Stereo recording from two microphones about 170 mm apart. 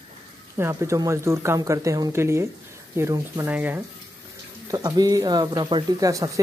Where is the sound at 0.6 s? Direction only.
15° right (ahead or behind).